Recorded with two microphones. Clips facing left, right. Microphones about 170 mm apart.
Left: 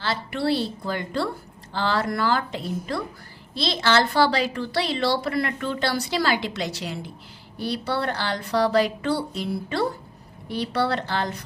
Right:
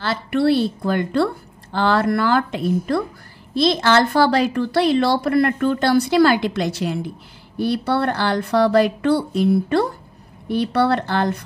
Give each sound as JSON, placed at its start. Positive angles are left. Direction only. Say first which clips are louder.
{"t": 0.0, "sound": "a woman's voice", "louder": "right 7 dB", "side_deg": -55}